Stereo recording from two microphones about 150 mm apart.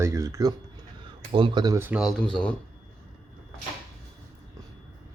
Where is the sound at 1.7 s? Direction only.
15° right (ahead or behind).